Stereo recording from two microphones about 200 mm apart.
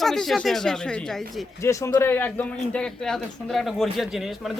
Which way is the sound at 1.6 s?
15° left (ahead or behind).